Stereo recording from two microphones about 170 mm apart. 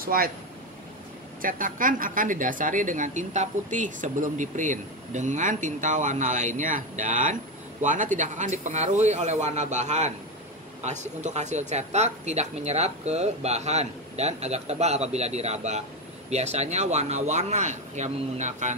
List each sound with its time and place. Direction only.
0.0 s speech: 60° right (ahead or behind)
1.4 s speech: 55° right (ahead or behind)